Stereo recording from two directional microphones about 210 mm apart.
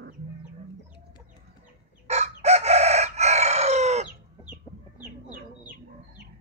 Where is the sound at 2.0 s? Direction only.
30° right (ahead or behind).